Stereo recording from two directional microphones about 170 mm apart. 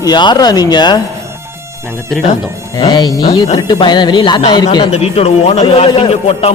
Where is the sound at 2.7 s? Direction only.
25° left (ahead or behind).